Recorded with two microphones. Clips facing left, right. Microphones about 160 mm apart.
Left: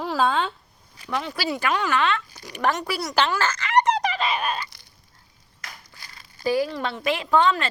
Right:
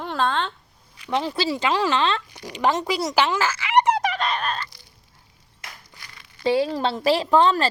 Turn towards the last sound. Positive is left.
turn(degrees=-35)  # may be behind; listen again after turning